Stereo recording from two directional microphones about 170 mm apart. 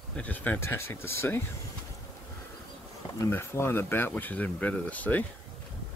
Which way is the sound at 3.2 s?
15° left (ahead or behind).